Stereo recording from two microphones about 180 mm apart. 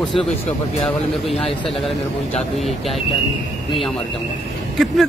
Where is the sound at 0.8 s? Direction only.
Centre (ahead or behind).